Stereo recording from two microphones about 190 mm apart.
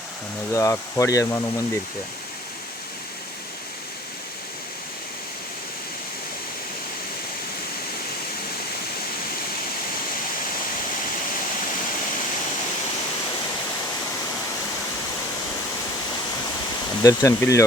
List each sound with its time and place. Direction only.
0.5 s speech: 15° left (ahead or behind)
17.0 s speech: 20° left (ahead or behind)